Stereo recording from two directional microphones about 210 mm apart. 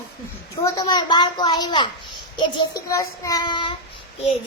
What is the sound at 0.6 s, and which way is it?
A child's voice, 20° left (ahead or behind).